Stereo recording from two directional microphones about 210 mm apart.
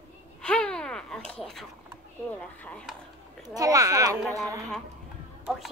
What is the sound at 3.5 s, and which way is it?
Speech, 15° right (ahead or behind).